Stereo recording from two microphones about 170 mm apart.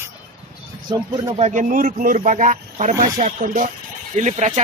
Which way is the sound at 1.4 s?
50° right (ahead or behind).